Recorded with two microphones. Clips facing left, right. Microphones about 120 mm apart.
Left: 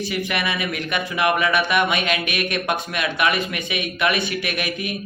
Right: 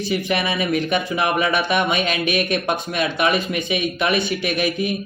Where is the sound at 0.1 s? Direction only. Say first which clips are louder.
Right 7 dB; 30° right (ahead or behind).